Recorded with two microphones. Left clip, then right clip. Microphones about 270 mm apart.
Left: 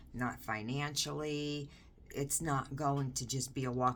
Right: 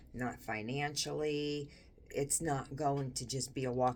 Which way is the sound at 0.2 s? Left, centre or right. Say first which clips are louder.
Left 1 dB; centre.